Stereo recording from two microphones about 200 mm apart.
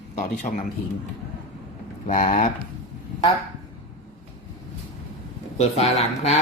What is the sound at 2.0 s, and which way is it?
Speech, 40° left (ahead or behind).